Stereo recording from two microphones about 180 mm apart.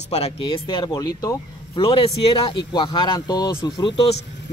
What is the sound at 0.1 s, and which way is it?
Speech, 30° left (ahead or behind).